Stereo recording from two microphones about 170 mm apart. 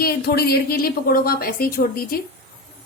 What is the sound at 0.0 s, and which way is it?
Speech, 65° left (ahead or behind).